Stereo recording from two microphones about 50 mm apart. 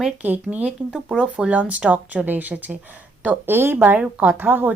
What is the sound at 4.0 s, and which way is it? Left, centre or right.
Speech, right.